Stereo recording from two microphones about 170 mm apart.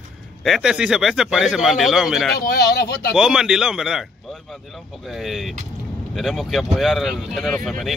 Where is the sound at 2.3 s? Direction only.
65° left (ahead or behind).